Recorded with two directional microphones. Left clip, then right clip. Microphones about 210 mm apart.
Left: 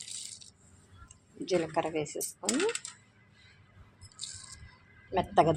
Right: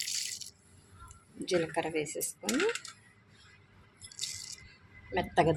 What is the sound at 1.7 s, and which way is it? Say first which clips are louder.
Speech: left 2 dB; 10° left (ahead or behind).